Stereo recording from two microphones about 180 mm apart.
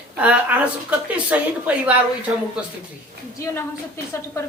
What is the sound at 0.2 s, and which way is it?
A woman's voice, 10° right (ahead or behind).